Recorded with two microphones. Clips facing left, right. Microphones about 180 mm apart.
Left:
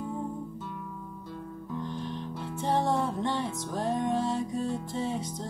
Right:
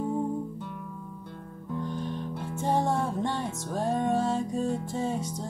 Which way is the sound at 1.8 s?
50° right (ahead or behind).